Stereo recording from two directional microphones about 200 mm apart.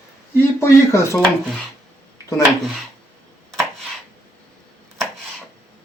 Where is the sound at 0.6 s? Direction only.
15° left (ahead or behind).